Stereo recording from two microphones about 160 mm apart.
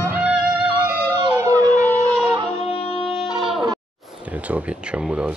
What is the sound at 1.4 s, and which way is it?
Howl, 20° right (ahead or behind).